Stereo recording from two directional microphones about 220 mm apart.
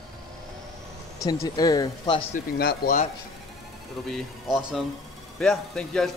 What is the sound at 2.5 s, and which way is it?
Speech, 45° left (ahead or behind).